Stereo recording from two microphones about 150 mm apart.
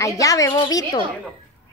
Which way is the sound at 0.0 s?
20° left (ahead or behind).